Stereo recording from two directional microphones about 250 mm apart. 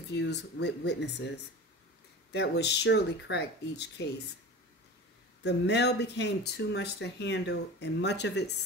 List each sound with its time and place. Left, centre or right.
0.1 s speech: left
5.4 s speech: left